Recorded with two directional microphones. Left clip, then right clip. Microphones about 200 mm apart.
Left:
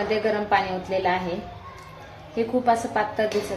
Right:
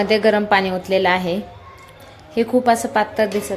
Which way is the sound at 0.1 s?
50° right (ahead or behind).